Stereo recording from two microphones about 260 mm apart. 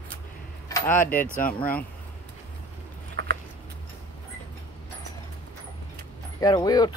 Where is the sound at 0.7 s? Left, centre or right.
Centre.